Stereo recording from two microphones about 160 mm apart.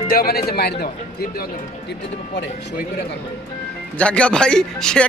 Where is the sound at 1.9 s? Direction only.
90° left.